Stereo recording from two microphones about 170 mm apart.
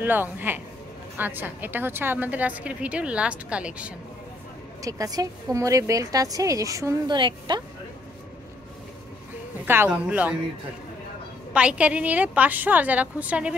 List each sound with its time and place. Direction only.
0.0 s a woman's voice: 10° right (ahead or behind)
4.8 s a woman's voice: 20° right (ahead or behind)
9.7 s a woman's voice: 10° right (ahead or behind)
11.5 s a woman's voice: 5° right (ahead or behind)